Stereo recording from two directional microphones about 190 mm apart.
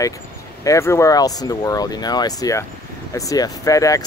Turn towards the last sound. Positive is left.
turn(degrees=15)  # may be behind; listen again after turning